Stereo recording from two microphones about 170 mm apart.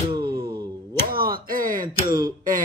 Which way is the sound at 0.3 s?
65° right (ahead or behind).